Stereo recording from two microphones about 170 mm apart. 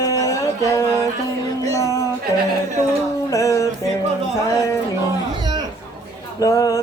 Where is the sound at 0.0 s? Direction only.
20° left (ahead or behind).